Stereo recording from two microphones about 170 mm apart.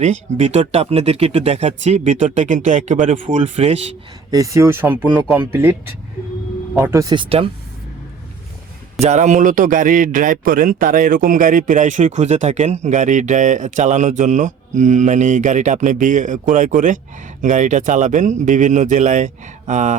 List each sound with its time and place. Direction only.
0.0 s speech: 45° right (ahead or behind)
4.3 s speech: 20° right (ahead or behind)
6.9 s speech: 25° right (ahead or behind)
9.0 s a man's voice: 45° right (ahead or behind)